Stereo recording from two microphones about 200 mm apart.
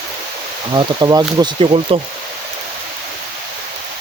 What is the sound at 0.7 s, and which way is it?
Speech, 20° right (ahead or behind).